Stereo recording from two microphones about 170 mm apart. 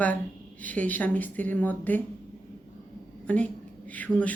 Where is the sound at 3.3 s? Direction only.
10° left (ahead or behind).